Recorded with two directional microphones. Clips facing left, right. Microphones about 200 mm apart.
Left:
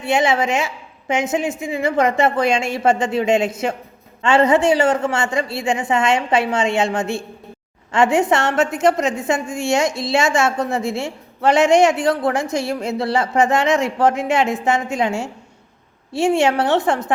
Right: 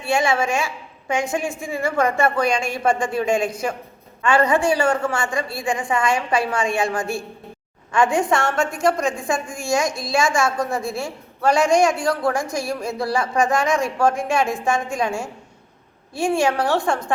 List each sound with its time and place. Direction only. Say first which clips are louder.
0.0 s a woman's voice: left 2 dB; 20° left (ahead or behind)